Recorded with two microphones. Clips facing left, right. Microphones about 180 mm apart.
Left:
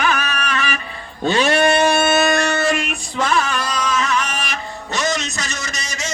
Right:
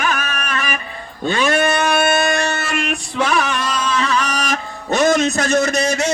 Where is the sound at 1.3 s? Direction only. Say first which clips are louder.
Left 1 dB; 50° right (ahead or behind).